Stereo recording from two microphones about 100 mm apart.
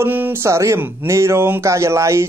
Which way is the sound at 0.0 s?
20° right (ahead or behind).